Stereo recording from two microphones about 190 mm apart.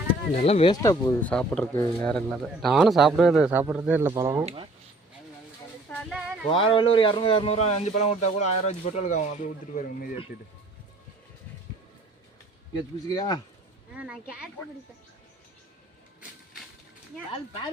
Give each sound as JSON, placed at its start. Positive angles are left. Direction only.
{"t": 0.4, "sound": "speech", "side_deg": 30}
{"t": 6.1, "sound": "a sound", "side_deg": -5}
{"t": 6.5, "sound": "speech", "side_deg": 30}
{"t": 13.1, "sound": "speech", "side_deg": 20}
{"t": 13.9, "sound": "speech", "side_deg": -5}